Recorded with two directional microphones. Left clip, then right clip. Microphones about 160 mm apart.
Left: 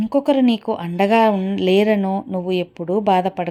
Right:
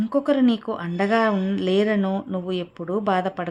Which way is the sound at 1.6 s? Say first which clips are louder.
Left 6 dB; 15° left (ahead or behind).